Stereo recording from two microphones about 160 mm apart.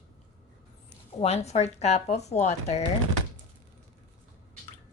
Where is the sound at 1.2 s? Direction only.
45° left (ahead or behind).